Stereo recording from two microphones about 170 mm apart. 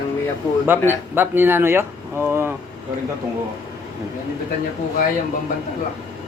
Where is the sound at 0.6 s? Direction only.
10° right (ahead or behind).